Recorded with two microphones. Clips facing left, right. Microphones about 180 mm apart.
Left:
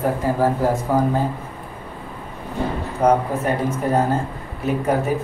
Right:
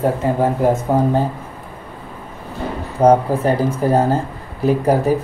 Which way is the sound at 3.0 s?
30° right (ahead or behind).